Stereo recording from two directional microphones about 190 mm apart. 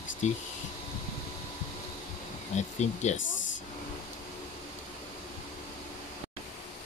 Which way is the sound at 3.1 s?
80° left.